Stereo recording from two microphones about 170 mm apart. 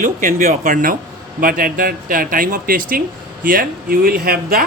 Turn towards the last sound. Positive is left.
turn(degrees=-60)  # may be behind; listen again after turning